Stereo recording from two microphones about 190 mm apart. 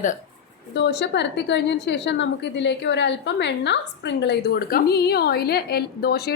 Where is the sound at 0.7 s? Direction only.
65° left (ahead or behind).